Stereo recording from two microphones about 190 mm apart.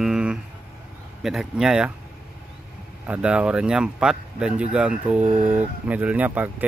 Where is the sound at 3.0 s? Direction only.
5° right (ahead or behind).